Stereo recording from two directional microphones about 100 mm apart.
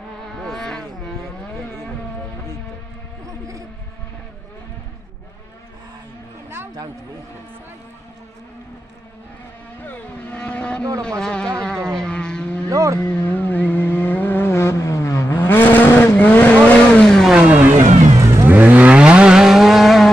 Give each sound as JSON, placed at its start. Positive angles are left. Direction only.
{"t": 0.4, "sound": "insect", "side_deg": 5}
{"t": 3.3, "sound": "a sound", "side_deg": -35}
{"t": 9.8, "sound": "vehicle", "side_deg": 15}
{"t": 12.6, "sound": "vehicle", "side_deg": -35}
{"t": 13.0, "sound": "vehicle", "side_deg": 15}
{"t": 17.3, "sound": "vehicle", "side_deg": -15}